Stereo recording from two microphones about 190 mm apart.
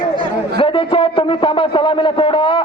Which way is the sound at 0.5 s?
25° left (ahead or behind).